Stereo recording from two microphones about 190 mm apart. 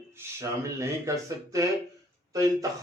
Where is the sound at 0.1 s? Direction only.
15° right (ahead or behind).